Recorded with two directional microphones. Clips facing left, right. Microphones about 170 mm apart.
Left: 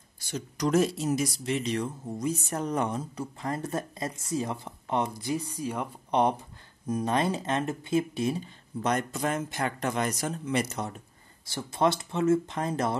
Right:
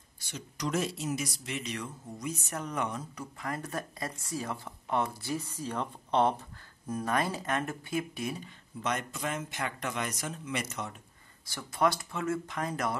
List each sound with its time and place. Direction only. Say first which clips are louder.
0.2 s speech: left 7 dB; 40° left (ahead or behind)
11.4 s speech: left 3 dB; 25° left (ahead or behind)